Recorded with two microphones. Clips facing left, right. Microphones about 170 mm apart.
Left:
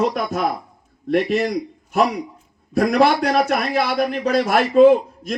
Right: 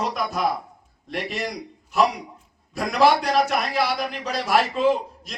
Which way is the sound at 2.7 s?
50° left (ahead or behind).